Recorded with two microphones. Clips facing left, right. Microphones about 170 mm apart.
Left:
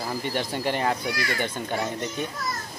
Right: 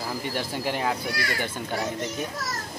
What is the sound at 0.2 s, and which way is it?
A child's voice, 5° right (ahead or behind).